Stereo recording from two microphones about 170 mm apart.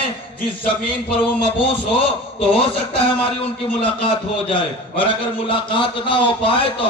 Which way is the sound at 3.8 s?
30° left (ahead or behind).